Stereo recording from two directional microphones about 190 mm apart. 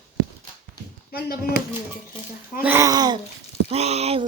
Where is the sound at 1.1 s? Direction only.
50° left (ahead or behind).